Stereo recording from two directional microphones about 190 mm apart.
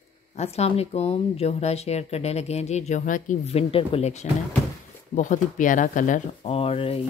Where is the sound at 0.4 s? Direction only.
35° left (ahead or behind).